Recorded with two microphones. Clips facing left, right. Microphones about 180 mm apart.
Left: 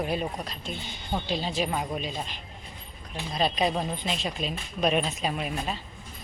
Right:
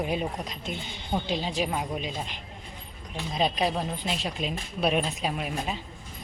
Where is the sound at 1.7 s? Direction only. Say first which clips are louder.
Even; 5° right (ahead or behind).